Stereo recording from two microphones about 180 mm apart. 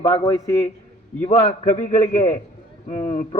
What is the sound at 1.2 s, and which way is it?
Speech, 35° left (ahead or behind).